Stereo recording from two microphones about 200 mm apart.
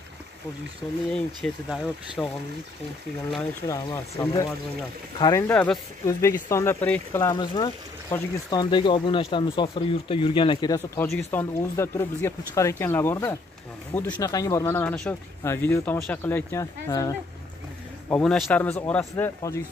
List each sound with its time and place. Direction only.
1.1 s speech: 5° left (ahead or behind)
3.6 s speech: 15° left (ahead or behind)
5.5 s speech: 10° left (ahead or behind)
11.1 s speech: 15° left (ahead or behind)
18.0 s speech: 5° left (ahead or behind)